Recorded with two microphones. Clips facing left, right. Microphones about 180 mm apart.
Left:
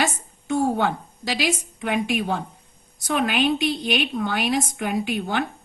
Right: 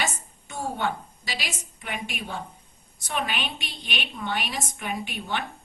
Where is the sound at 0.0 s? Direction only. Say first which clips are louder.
Left 6 dB; 65° left (ahead or behind).